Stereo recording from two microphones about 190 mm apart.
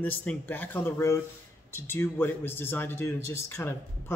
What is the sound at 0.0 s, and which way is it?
Speech, 10° left (ahead or behind).